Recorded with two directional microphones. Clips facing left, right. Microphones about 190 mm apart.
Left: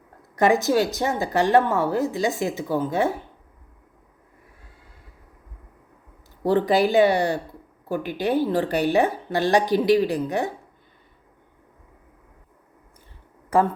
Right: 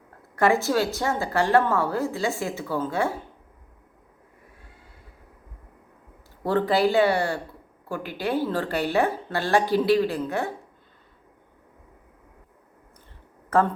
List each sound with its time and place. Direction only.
0.3 s speech: 15° left (ahead or behind)
6.4 s speech: 15° left (ahead or behind)
13.5 s speech: 15° left (ahead or behind)